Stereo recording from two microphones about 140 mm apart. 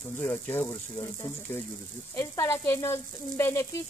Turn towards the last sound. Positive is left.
turn(degrees=20)  # may be behind; listen again after turning